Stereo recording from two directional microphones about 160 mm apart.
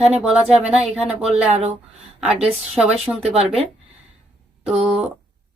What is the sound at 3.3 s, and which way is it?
Speech, 40° right (ahead or behind).